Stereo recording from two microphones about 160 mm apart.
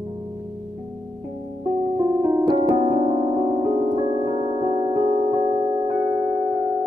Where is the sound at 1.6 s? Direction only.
20° right (ahead or behind).